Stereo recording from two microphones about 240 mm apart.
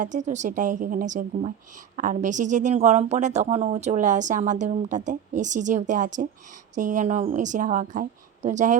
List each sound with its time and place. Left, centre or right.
0.0 s a woman's voice: right